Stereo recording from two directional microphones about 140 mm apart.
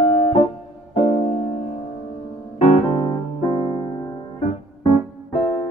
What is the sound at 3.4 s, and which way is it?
Music, 35° left (ahead or behind).